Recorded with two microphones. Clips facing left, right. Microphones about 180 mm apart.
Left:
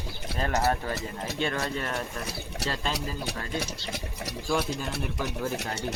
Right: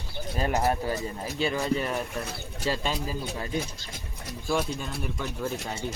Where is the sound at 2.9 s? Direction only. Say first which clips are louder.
Right 1 dB; 80° left.